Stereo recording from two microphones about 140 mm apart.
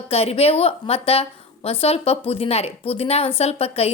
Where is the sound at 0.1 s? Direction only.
45° left (ahead or behind).